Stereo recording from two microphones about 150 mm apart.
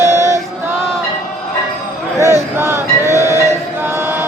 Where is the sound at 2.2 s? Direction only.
15° right (ahead or behind).